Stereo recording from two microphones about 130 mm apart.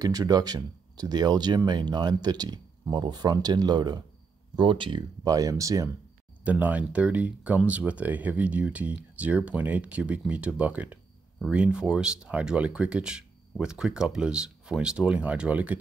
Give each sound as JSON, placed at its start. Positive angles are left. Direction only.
{"t": 0.0, "sound": "speech", "side_deg": -30}
{"t": 6.4, "sound": "speech", "side_deg": -10}